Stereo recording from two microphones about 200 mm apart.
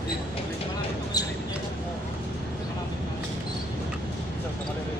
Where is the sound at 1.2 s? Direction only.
20° left (ahead or behind).